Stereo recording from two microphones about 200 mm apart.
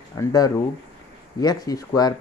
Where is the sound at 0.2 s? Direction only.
20° left (ahead or behind).